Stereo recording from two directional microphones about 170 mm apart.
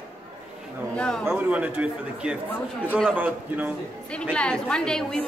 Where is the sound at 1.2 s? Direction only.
10° right (ahead or behind).